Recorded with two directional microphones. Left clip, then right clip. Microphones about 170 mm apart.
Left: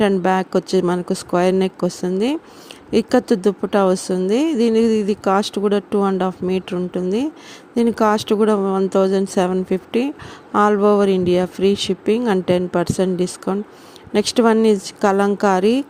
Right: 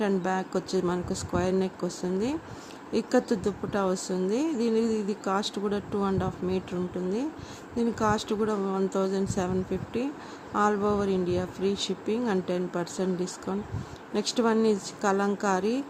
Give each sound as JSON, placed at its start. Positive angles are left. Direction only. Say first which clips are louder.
{"t": 0.0, "sound": "speech", "louder": "left 11 dB", "side_deg": 45}